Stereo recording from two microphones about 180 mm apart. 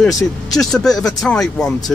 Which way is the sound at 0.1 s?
20° left (ahead or behind).